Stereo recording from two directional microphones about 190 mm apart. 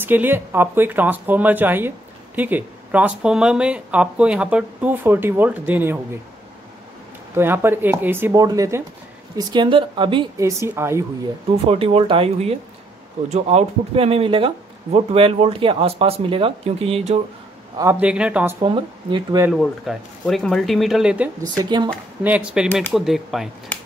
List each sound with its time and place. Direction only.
0.0 s speech: 10° right (ahead or behind)
7.3 s a woman's voice: 10° right (ahead or behind)
11.6 s speech: 30° right (ahead or behind)
17.7 s speech: 10° right (ahead or behind)
18.6 s a woman's voice: 25° right (ahead or behind)
19.5 s speech: centre (ahead or behind)
21.4 s a woman's voice: 20° right (ahead or behind)
22.2 s speech: 5° right (ahead or behind)